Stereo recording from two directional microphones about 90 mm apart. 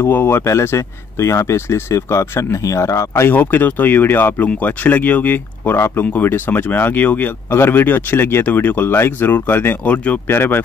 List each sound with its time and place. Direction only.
0.0 s speech: 25° left (ahead or behind)